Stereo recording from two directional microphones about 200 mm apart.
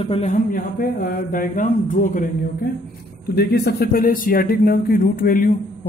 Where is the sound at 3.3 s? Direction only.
50° left (ahead or behind).